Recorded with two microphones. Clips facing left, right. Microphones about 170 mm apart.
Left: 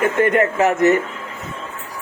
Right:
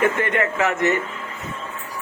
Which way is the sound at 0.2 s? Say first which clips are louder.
Left 6 dB; 40° left (ahead or behind).